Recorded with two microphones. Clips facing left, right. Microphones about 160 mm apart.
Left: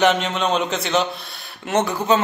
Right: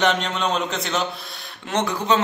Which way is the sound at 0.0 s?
5° left (ahead or behind).